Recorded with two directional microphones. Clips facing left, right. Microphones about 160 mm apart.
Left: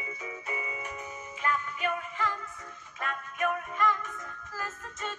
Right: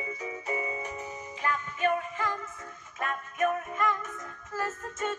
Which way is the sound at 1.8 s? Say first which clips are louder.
Right 4 dB; 40° right (ahead or behind).